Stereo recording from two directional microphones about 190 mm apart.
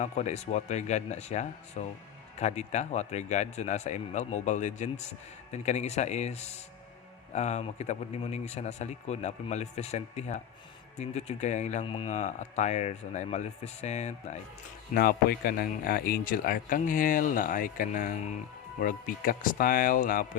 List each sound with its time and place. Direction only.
0.0 s speech: 40° left (ahead or behind)
14.9 s speech: 55° left (ahead or behind)